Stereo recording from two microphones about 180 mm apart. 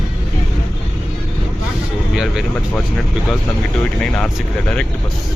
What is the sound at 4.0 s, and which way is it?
Vehicle, 5° left (ahead or behind).